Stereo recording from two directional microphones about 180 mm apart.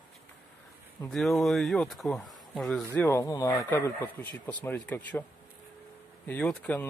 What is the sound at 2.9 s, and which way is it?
Speech, 15° left (ahead or behind).